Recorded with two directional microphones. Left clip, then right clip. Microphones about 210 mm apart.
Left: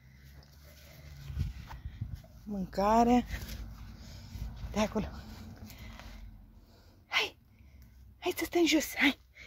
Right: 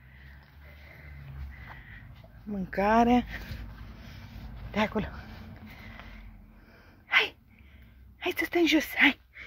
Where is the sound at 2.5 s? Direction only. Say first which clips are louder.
Right 3 dB; 5° left (ahead or behind).